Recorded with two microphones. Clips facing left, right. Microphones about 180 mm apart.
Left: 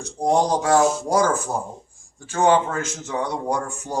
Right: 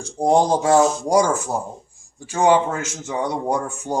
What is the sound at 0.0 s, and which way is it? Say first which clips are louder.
Speech: right 3 dB; 30° right (ahead or behind).